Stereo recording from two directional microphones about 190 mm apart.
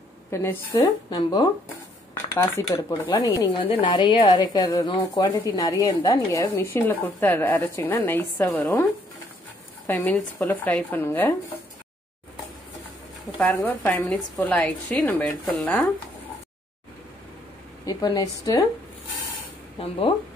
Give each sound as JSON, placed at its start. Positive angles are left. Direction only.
{"t": 0.3, "sound": "a woman's voice", "side_deg": 10}
{"t": 9.8, "sound": "speech", "side_deg": 5}
{"t": 13.4, "sound": "speech", "side_deg": 10}
{"t": 17.8, "sound": "a woman's voice", "side_deg": 20}